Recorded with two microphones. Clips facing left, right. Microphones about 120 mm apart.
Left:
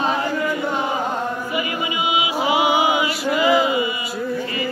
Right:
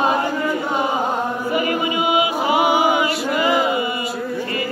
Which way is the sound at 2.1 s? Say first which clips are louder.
Right 1 dB; 45° right (ahead or behind).